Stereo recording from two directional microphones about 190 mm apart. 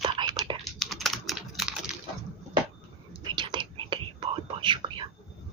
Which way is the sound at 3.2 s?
25° right (ahead or behind).